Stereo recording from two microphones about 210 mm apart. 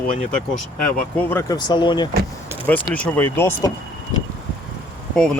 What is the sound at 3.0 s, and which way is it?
Speech, 5° left (ahead or behind).